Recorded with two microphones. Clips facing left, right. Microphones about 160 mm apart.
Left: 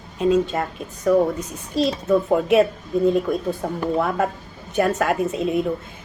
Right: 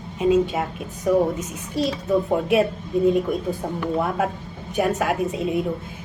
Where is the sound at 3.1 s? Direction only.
10° right (ahead or behind).